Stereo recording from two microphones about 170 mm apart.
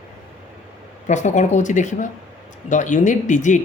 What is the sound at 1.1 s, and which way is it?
Speech, 45° left (ahead or behind).